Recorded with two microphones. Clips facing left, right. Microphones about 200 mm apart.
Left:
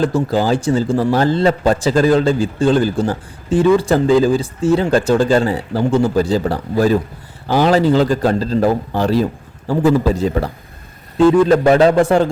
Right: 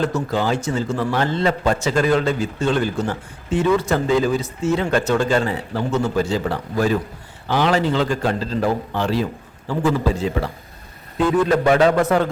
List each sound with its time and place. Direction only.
0.0 s a man's voice: 35° left (ahead or behind)
11.2 s a man's voice: 30° left (ahead or behind)